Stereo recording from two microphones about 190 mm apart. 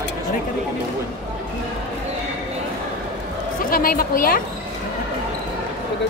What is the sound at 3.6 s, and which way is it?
Speech, 50° left (ahead or behind).